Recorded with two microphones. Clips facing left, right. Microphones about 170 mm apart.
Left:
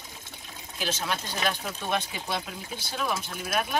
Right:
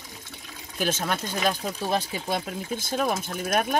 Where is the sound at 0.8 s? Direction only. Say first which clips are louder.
Right 4 dB; 50° right (ahead or behind).